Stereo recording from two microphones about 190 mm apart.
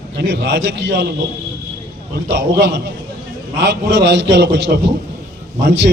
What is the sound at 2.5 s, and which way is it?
A man's voice, 65° right (ahead or behind).